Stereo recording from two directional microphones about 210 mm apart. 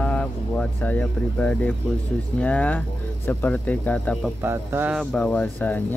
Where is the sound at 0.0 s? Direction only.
5° left (ahead or behind).